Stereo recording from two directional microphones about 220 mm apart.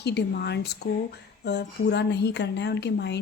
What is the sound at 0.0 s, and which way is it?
A woman's voice, 50° left (ahead or behind).